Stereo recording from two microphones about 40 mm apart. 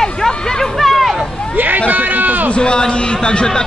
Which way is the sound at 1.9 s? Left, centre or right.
Right.